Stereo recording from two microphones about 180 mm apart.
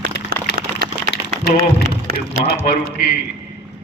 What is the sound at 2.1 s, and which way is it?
Speech, 55° right (ahead or behind).